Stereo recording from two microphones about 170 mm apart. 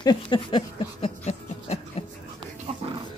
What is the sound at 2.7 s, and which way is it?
Music, 35° right (ahead or behind).